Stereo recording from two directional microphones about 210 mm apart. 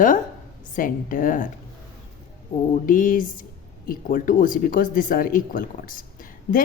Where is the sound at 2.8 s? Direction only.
40° left (ahead or behind).